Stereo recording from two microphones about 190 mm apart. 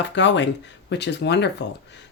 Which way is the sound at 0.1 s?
70° left (ahead or behind).